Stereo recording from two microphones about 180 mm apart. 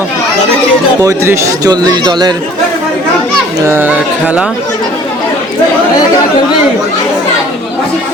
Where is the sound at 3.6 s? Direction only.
10° right (ahead or behind).